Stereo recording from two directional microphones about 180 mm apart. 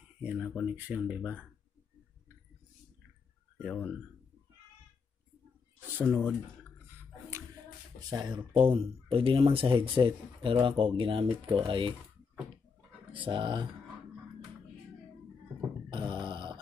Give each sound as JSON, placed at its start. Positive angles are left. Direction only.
{"t": 0.2, "sound": "a sound", "side_deg": -5}
{"t": 0.6, "sound": "speech", "side_deg": -10}
{"t": 3.5, "sound": "speech", "side_deg": -5}
{"t": 6.0, "sound": "speech", "side_deg": 5}
{"t": 8.1, "sound": "speech", "side_deg": -25}
{"t": 13.1, "sound": "speech", "side_deg": -25}
{"t": 15.9, "sound": "grunt", "side_deg": -25}